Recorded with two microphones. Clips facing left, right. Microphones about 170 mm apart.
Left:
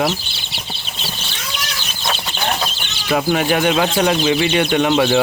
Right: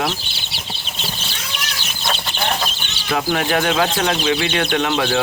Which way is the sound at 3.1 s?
10° left (ahead or behind).